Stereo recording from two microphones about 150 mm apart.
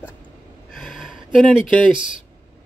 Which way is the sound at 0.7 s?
Centre (ahead or behind).